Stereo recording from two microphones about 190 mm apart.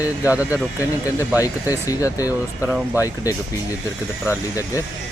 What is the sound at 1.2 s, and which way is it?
Speech, 15° left (ahead or behind).